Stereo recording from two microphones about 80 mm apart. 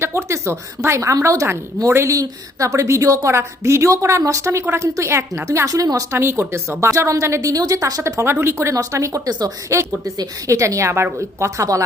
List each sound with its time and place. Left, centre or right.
0.0 s a woman's voice: right
6.1 s a woman's voice: right
8.2 s a woman's voice: right